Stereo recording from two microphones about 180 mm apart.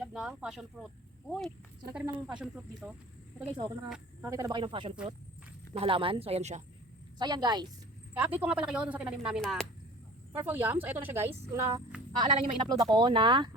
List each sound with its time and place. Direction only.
0.0 s speech: 5° right (ahead or behind)
4.2 s a woman's voice: 20° right (ahead or behind); by 6.6 s 35° right (ahead or behind)
7.2 s speech: 25° right (ahead or behind)
8.1 s speech: 10° right (ahead or behind)
10.3 s speech: 10° right (ahead or behind); by 13.5 s 25° right (ahead or behind)